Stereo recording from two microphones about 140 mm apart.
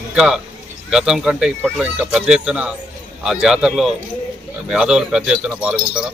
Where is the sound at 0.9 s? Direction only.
5° right (ahead or behind).